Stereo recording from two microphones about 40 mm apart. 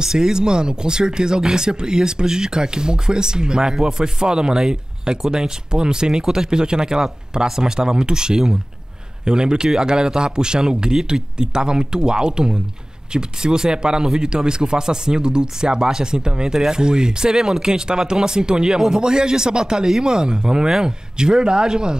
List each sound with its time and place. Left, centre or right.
0.0 s speech: centre